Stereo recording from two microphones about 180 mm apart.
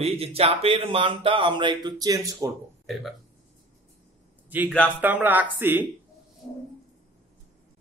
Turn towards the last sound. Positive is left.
turn(degrees=-10)  # may be behind; listen again after turning